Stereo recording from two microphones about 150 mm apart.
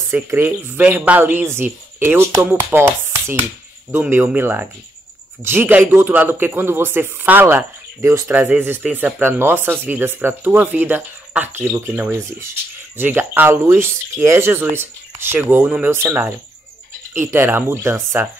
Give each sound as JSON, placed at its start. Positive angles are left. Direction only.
{"t": 0.1, "sound": "a man's voice", "side_deg": -15}
{"t": 3.9, "sound": "a man's voice", "side_deg": -10}